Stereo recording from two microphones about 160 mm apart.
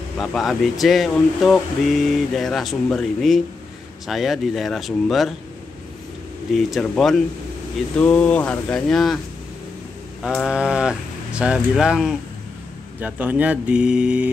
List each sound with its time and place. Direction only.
0.2 s speech: centre (ahead or behind)
6.5 s speech: centre (ahead or behind)
10.2 s speech: centre (ahead or behind)